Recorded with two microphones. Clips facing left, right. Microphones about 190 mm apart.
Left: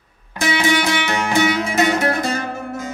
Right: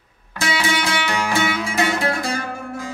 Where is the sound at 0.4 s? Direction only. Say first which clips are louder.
Left 4 dB; 20° left (ahead or behind).